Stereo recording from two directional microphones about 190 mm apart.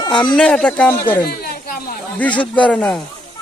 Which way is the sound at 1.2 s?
55° left (ahead or behind).